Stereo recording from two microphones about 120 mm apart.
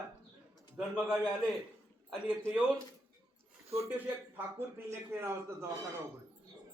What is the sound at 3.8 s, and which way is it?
A man's voice, 15° right (ahead or behind).